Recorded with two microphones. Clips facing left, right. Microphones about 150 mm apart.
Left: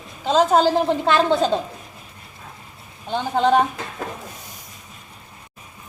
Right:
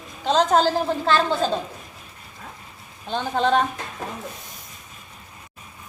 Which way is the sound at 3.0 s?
15° left (ahead or behind).